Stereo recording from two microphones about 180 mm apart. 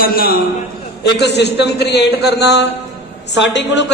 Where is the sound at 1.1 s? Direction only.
70° left (ahead or behind).